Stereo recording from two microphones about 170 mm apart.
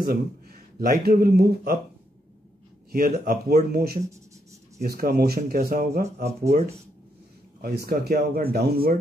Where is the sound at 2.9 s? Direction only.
60° right (ahead or behind).